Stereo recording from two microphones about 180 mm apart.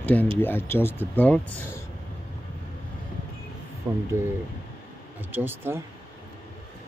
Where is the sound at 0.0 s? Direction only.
10° left (ahead or behind).